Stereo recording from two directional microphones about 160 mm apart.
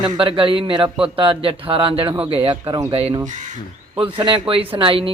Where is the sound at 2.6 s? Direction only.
25° right (ahead or behind).